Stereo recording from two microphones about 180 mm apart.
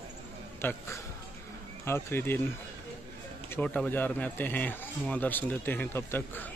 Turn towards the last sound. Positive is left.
turn(degrees=10)  # may be behind; listen again after turning